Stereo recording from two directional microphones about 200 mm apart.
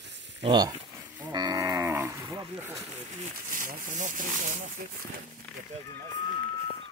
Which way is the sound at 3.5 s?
40° right (ahead or behind).